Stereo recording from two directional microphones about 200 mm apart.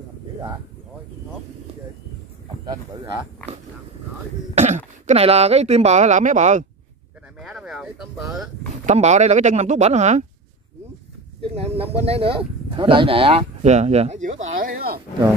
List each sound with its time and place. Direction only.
2.6 s speech: 20° right (ahead or behind)
4.6 s speech: 35° right (ahead or behind)
7.3 s a sound: centre (ahead or behind)
8.8 s speech: 35° right (ahead or behind)
11.5 s speech: 30° right (ahead or behind)
14.6 s speech: 45° right (ahead or behind)